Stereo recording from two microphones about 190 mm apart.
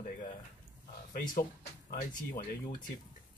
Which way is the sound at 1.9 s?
50° left (ahead or behind).